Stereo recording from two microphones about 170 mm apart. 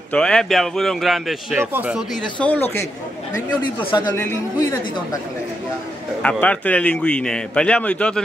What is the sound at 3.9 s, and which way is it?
Speech, 25° left (ahead or behind).